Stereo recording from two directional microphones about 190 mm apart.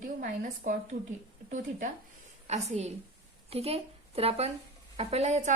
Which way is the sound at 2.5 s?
35° right (ahead or behind).